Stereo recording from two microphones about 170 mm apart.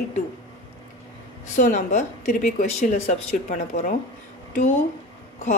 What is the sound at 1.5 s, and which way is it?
Speech, 50° left (ahead or behind).